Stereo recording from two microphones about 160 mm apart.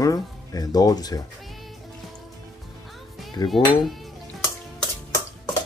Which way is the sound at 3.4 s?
20° left (ahead or behind).